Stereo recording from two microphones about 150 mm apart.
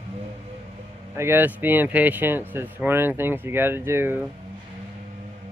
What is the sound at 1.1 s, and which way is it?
Speech, 15° right (ahead or behind).